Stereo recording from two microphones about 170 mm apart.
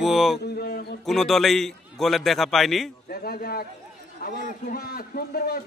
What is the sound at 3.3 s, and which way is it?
A man's voice, 65° left (ahead or behind).